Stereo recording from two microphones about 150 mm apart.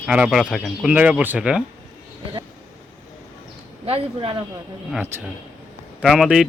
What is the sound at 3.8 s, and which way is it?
Speech, 40° right (ahead or behind).